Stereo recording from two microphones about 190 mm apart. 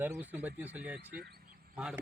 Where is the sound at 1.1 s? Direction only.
55° right (ahead or behind).